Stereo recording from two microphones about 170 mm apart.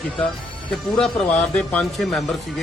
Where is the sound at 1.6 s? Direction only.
5° left (ahead or behind).